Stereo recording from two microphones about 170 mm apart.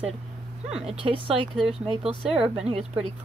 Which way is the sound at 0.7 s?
5° right (ahead or behind).